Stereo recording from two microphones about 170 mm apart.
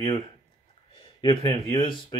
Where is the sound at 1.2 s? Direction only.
25° left (ahead or behind).